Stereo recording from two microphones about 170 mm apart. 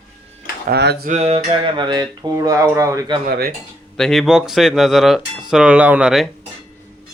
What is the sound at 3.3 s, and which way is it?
Speech, 60° right (ahead or behind).